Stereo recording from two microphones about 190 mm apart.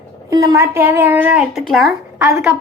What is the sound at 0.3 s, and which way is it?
A woman's voice, 20° right (ahead or behind).